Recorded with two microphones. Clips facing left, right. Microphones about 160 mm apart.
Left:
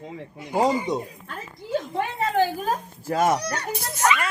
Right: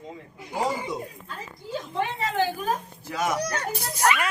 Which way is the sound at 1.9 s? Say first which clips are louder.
Even; 45° left (ahead or behind).